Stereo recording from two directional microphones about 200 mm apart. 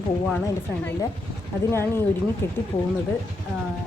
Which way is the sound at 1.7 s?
10° left (ahead or behind).